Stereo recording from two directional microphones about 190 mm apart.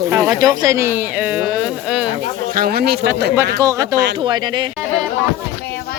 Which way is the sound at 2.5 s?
50° right (ahead or behind).